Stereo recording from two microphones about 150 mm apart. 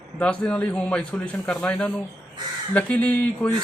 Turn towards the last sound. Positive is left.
turn(degrees=10)  # may be behind; listen again after turning